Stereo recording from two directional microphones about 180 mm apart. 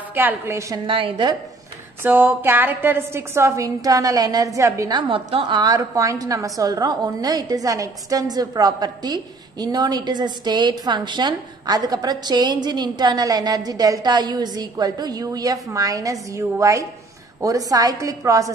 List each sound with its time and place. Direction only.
0.1 s a woman's voice: 10° right (ahead or behind)
0.8 s a woman's voice: 30° right (ahead or behind)
2.0 s a woman's voice: 10° right (ahead or behind)